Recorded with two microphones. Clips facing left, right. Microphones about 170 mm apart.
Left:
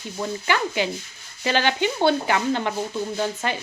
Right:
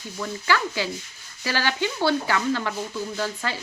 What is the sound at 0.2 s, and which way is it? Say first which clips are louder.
Speech: left 1 dB; 20° left (ahead or behind).